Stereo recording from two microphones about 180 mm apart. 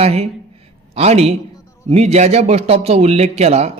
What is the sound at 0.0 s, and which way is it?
A man's voice, 35° right (ahead or behind).